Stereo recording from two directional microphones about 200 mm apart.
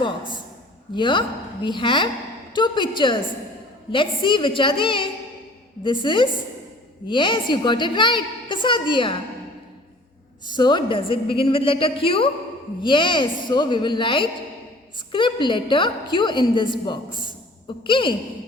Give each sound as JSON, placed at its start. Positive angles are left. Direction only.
{"t": 0.9, "sound": "a woman's voice", "side_deg": 25}
{"t": 10.5, "sound": "a woman's voice", "side_deg": 20}